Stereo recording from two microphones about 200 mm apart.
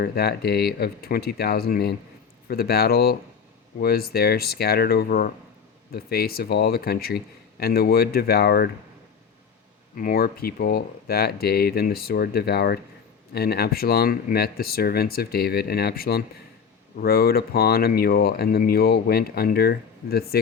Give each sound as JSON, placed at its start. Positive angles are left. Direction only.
{"t": 0.0, "sound": "speech", "side_deg": 50}
{"t": 9.9, "sound": "speech", "side_deg": 45}